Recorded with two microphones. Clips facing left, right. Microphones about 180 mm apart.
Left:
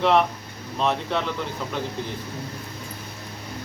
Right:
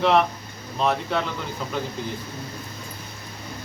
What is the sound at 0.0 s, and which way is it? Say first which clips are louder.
Speech: even; centre (ahead or behind).